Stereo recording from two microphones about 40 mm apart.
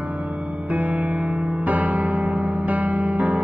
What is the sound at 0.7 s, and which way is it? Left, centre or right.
Music, right.